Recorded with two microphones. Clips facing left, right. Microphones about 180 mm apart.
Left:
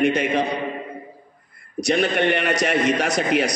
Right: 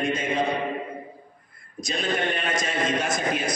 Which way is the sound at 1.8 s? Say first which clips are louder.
Left 7 dB; 70° left (ahead or behind).